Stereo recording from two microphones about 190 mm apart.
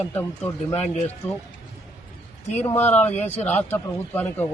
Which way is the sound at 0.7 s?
35° left (ahead or behind).